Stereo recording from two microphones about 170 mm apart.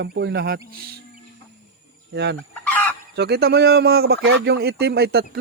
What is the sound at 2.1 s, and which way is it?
Chicken, 90° right.